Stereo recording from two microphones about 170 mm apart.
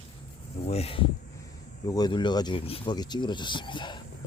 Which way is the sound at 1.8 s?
25° left (ahead or behind).